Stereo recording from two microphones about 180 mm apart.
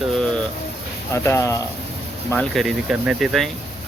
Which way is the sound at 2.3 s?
5° left (ahead or behind).